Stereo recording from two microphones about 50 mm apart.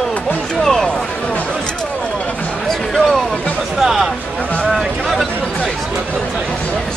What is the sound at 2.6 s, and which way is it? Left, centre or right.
Music, centre.